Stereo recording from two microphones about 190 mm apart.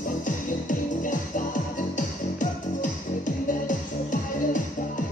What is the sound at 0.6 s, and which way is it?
Music, 40° left (ahead or behind).